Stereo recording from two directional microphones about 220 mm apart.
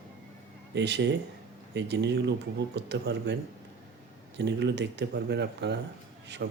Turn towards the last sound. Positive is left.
turn(degrees=-50)  # may be behind; listen again after turning